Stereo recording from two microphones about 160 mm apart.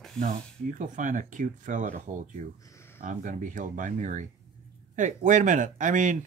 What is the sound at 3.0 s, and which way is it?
Speech, 55° right (ahead or behind).